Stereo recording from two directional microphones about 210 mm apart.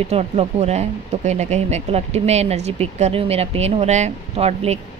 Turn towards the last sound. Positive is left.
turn(degrees=-30)  # may be behind; listen again after turning